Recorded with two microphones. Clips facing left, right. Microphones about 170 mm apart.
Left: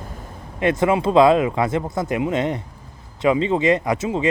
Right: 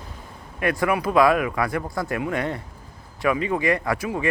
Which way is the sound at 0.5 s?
20° left (ahead or behind).